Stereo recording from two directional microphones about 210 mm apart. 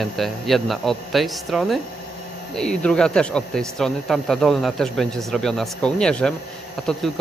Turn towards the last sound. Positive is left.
turn(degrees=0)  # may be behind; listen again after turning